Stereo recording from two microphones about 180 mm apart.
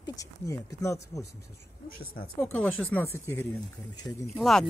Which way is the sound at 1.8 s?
55° left (ahead or behind).